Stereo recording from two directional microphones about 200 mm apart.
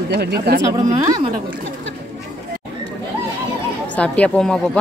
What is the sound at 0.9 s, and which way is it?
Speech, 20° right (ahead or behind).